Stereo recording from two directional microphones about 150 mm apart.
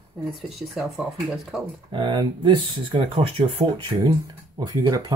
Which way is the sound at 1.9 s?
30° right (ahead or behind).